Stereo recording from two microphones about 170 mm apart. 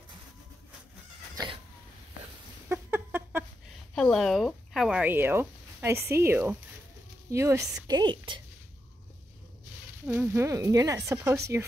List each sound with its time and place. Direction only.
1.3 s cat: 25° right (ahead or behind)
2.7 s a sound: 15° right (ahead or behind)
3.9 s a woman's voice: 5° left (ahead or behind); by 8.4 s 25° right (ahead or behind)
10.0 s speech: 15° right (ahead or behind)